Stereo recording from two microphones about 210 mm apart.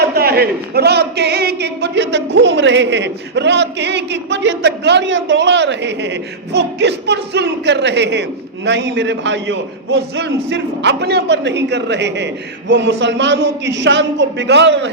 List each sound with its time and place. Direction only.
0.0 s a man's voice: 45° right (ahead or behind)